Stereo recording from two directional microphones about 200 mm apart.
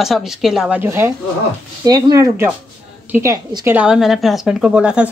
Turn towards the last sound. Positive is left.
turn(degrees=-5)  # may be behind; listen again after turning